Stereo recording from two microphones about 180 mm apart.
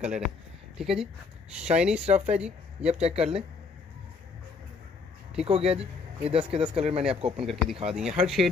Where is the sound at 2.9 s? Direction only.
35° right (ahead or behind).